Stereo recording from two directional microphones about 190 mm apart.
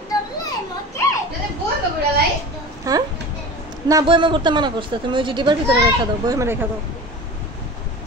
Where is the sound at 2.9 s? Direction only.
20° right (ahead or behind).